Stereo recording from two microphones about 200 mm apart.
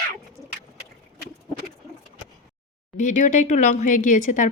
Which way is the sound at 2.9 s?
40° left (ahead or behind).